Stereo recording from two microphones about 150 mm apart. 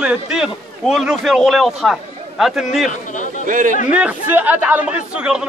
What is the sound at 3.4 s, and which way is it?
Speech, 60° right (ahead or behind).